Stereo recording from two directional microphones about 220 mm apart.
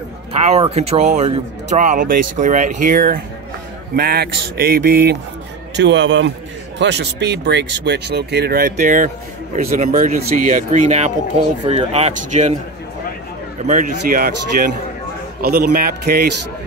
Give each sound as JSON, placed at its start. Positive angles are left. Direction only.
{"t": 0.3, "sound": "speech", "side_deg": -25}
{"t": 5.8, "sound": "a man's voice", "side_deg": -55}
{"t": 13.7, "sound": "speech", "side_deg": -40}